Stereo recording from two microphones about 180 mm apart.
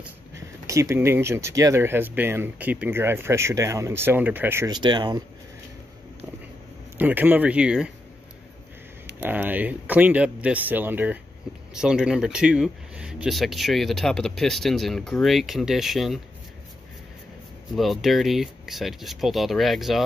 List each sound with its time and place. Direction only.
0.3 s speech: 15° right (ahead or behind)
4.7 s speech: 25° right (ahead or behind)
7.0 s speech: 10° right (ahead or behind)
9.2 s speech: 10° right (ahead or behind)
17.7 s speech: centre (ahead or behind)